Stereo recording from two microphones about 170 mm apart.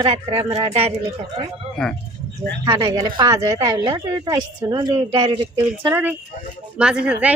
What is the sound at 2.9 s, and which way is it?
A woman's voice, 20° right (ahead or behind).